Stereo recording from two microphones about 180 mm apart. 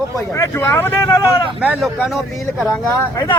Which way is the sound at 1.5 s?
10° right (ahead or behind).